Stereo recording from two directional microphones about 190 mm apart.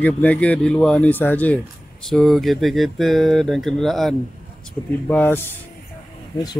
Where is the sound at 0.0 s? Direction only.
5° left (ahead or behind).